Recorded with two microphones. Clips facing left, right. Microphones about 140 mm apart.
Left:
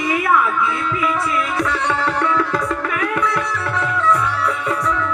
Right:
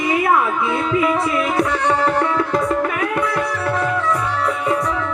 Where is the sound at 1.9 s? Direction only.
40° right (ahead or behind).